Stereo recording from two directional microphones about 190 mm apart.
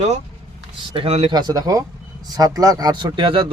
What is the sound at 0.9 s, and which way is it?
Speech, 30° right (ahead or behind).